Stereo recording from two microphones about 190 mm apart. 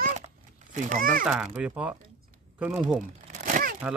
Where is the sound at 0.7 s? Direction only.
45° right (ahead or behind).